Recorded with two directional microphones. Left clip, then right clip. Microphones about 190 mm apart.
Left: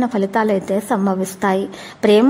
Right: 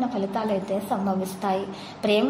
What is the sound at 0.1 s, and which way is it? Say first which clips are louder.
A woman's voice: left 9 dB; 45° left (ahead or behind).